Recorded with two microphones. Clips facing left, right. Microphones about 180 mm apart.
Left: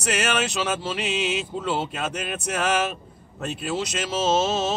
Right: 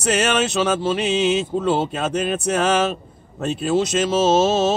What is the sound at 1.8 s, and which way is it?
Speech, 30° right (ahead or behind).